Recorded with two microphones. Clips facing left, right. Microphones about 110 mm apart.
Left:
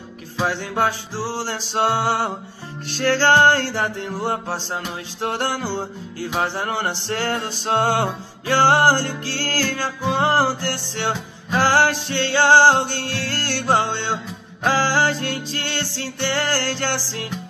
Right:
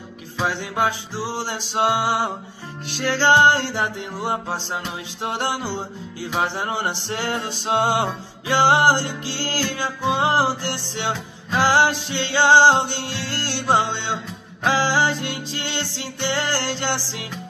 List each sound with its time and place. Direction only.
0.8 s music: 15° right (ahead or behind)